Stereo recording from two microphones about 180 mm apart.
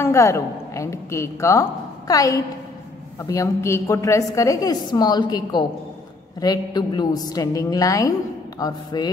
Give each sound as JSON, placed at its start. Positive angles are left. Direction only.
{"t": 0.0, "sound": "a woman's voice", "side_deg": 15}